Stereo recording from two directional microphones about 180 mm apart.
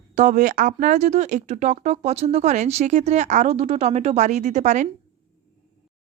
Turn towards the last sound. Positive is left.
turn(degrees=-40)  # may be behind; listen again after turning